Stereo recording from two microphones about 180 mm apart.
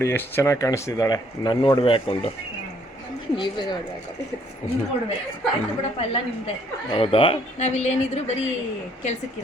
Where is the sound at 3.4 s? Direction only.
25° left (ahead or behind).